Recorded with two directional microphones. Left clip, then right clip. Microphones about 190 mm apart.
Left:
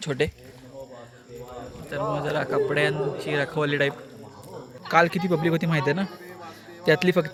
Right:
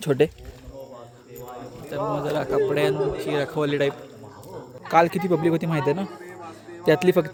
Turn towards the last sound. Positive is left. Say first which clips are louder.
# right 2 dB
turn(degrees=-10)  # may be behind; listen again after turning